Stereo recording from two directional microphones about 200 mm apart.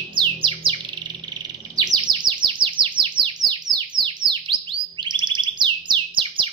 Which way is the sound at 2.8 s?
25° right (ahead or behind).